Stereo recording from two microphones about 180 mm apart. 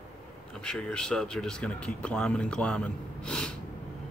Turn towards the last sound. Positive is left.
turn(degrees=5)  # may be behind; listen again after turning